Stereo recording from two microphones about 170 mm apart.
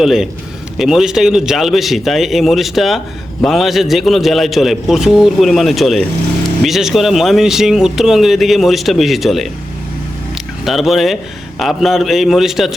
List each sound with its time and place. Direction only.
0.0 s speech: centre (ahead or behind)
10.7 s speech: centre (ahead or behind)